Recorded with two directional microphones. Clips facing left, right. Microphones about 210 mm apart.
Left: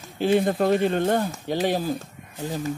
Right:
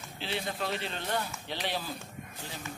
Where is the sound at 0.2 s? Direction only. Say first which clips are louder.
Left 15 dB; 50° left (ahead or behind).